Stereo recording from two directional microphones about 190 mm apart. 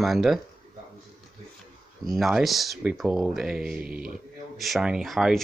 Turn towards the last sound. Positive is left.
turn(degrees=0)  # may be behind; listen again after turning